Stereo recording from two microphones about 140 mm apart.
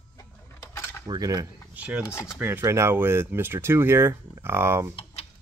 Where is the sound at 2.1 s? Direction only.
20° left (ahead or behind).